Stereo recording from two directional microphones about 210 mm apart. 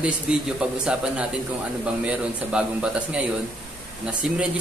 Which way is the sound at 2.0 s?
5° right (ahead or behind).